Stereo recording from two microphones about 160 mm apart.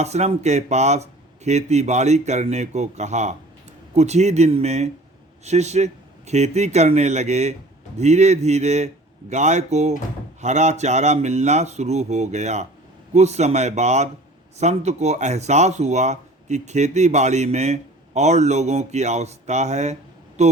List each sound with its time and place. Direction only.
0.0 s speech: 45° right (ahead or behind)